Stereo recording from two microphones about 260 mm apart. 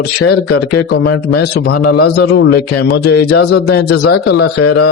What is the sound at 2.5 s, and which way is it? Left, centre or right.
Speech, left.